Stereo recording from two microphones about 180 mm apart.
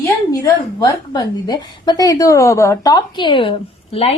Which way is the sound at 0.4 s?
20° left (ahead or behind).